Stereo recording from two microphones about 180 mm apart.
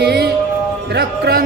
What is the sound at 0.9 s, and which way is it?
Speech, 60° right (ahead or behind).